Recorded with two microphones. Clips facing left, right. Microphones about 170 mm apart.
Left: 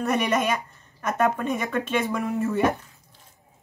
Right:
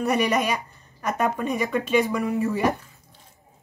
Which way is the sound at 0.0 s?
5° right (ahead or behind).